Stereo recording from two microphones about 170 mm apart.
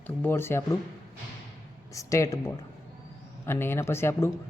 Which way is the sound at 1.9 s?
20° left (ahead or behind).